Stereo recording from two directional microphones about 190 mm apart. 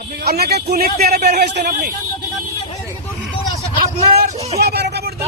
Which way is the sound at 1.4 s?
60° right (ahead or behind).